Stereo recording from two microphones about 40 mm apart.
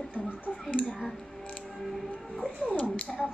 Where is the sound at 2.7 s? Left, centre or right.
Left.